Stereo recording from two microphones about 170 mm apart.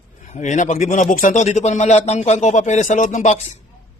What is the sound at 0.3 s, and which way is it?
A man's voice, 45° left (ahead or behind).